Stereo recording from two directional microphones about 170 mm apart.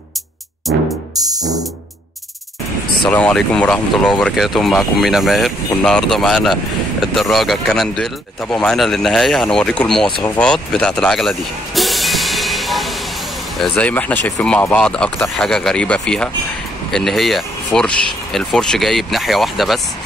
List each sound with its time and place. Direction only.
0.7 s music: 90° right
1.1 s music: 20° right (ahead or behind)
3.1 s speech: 5° left (ahead or behind)
10.2 s music: 5° left (ahead or behind)
13.6 s speech: 10° left (ahead or behind)